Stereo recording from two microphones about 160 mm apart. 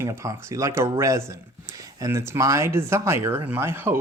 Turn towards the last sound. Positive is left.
turn(degrees=-15)  # may be behind; listen again after turning